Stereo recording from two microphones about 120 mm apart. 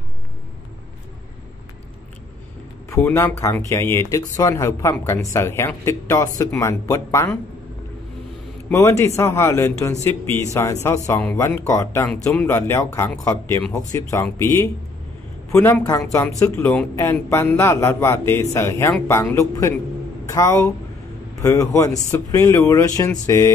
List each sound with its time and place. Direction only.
2.9 s speech: 20° left (ahead or behind)
8.7 s speech: 25° left (ahead or behind)